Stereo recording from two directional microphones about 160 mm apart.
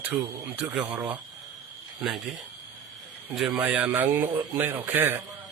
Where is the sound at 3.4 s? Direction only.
5° right (ahead or behind).